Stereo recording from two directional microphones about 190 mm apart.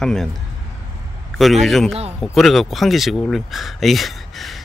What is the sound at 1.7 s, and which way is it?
Speech, centre (ahead or behind).